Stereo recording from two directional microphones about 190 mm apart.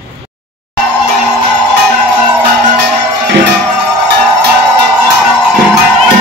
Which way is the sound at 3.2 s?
60° right (ahead or behind).